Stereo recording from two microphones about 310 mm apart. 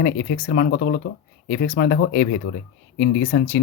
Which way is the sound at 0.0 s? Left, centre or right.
Left.